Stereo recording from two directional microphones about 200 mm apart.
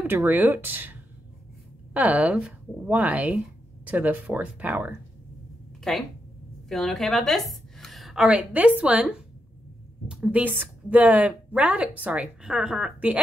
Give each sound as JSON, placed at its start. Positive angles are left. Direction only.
{"t": 0.0, "sound": "a woman's voice", "side_deg": -10}
{"t": 2.0, "sound": "a woman's voice", "side_deg": -10}
{"t": 5.9, "sound": "a woman's voice", "side_deg": 0}